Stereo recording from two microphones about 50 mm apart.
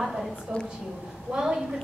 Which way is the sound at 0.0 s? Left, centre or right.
Centre.